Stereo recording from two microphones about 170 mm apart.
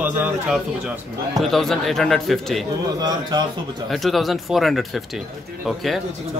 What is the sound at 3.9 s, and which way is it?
A man's voice, centre (ahead or behind).